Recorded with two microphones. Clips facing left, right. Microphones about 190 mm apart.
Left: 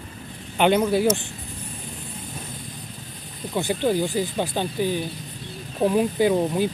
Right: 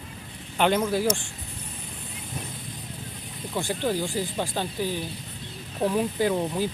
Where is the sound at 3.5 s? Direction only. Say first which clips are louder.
Left 5 dB; 20° left (ahead or behind).